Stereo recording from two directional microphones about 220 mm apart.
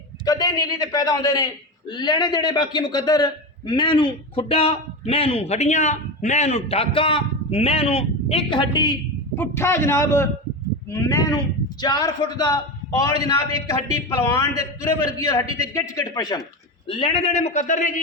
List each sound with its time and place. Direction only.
0.3 s a man's voice: 15° left (ahead or behind)
15.2 s a man's voice: 15° left (ahead or behind); by 18.0 s 35° left (ahead or behind)